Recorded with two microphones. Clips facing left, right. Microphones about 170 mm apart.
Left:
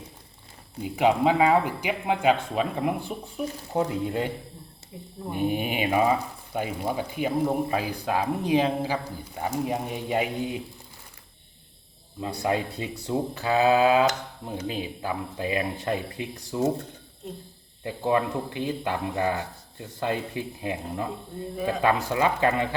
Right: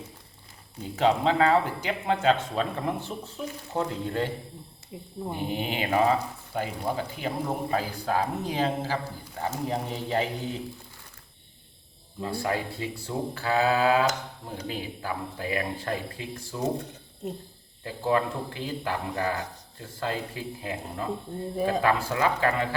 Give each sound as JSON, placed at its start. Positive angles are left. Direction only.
{"t": 0.8, "sound": "speech", "side_deg": 10}
{"t": 4.9, "sound": "speech", "side_deg": -20}
{"t": 5.4, "sound": "speech", "side_deg": 15}
{"t": 12.2, "sound": "speech", "side_deg": 20}
{"t": 17.8, "sound": "speech", "side_deg": 20}